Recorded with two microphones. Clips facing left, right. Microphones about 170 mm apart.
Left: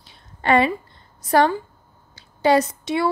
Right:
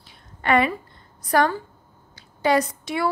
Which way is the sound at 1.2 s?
25° left (ahead or behind).